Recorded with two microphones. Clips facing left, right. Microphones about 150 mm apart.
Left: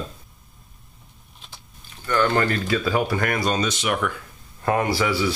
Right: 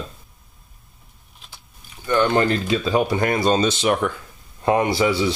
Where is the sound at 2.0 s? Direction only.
20° right (ahead or behind).